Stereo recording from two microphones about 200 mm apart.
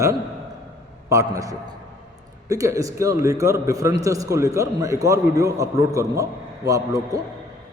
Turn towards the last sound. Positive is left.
turn(degrees=-15)  # may be behind; listen again after turning